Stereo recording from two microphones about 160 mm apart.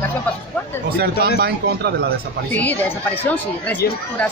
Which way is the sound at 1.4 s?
90° right.